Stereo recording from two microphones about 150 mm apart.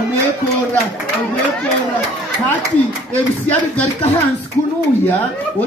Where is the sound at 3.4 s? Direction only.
10° left (ahead or behind).